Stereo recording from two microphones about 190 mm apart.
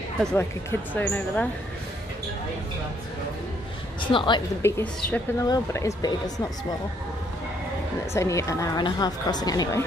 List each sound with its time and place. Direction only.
0.2 s a woman's voice: 5° left (ahead or behind)
4.1 s a woman's voice: 25° left (ahead or behind)
4.6 s a woman's voice: 15° left (ahead or behind)
8.1 s a woman's voice: 15° left (ahead or behind)